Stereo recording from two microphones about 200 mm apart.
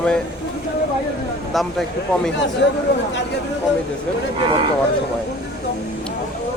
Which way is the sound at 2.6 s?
60° left (ahead or behind).